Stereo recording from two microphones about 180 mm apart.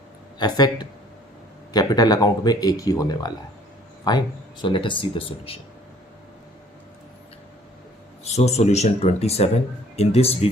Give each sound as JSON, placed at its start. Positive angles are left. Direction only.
{"t": 0.3, "sound": "speech", "side_deg": 25}
{"t": 8.2, "sound": "speech", "side_deg": 35}